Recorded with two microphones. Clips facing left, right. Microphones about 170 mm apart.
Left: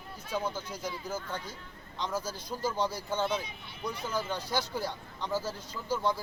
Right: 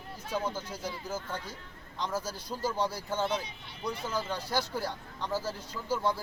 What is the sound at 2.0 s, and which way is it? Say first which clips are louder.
Speech: even; 10° right (ahead or behind).